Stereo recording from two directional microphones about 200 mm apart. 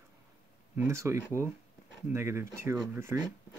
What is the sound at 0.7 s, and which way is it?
Speech, 15° right (ahead or behind).